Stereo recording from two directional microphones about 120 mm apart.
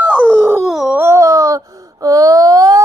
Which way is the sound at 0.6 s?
Centre (ahead or behind).